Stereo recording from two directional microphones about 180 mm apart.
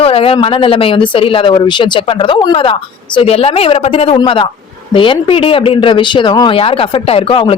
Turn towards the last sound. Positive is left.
turn(degrees=30)  # may be behind; listen again after turning